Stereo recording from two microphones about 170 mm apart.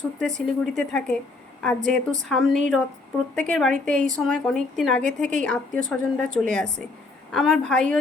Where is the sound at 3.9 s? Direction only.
50° right (ahead or behind).